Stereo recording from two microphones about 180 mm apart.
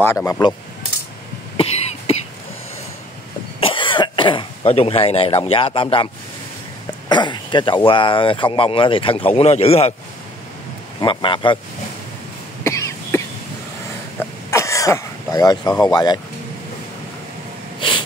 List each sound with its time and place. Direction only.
0.0 s speech: 15° left (ahead or behind)
3.6 s speech: 30° left (ahead or behind)
11.0 s speech: 25° left (ahead or behind)
12.6 s cough: 15° left (ahead or behind)
14.5 s throat clearing: 15° left (ahead or behind)
15.8 s speech: 20° left (ahead or behind)
17.7 s snort: 25° left (ahead or behind)